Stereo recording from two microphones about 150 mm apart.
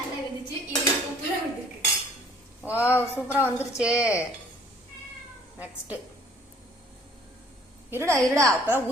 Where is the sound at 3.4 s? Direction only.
20° left (ahead or behind).